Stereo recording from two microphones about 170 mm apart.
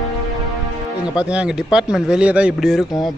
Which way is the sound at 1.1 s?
5° right (ahead or behind).